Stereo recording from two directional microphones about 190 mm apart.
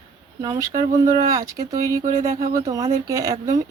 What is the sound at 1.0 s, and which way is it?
A woman's voice, 20° right (ahead or behind).